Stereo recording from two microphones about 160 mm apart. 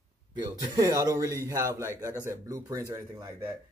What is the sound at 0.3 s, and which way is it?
A man's voice, 20° right (ahead or behind).